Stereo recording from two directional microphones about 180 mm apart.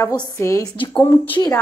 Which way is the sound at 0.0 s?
15° left (ahead or behind).